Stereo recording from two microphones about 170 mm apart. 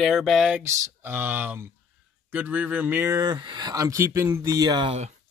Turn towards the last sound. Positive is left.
turn(degrees=-25)  # may be behind; listen again after turning